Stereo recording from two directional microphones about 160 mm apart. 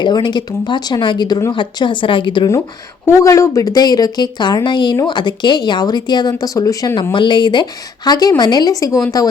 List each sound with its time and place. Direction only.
0.0 s a woman's voice: 30° left (ahead or behind)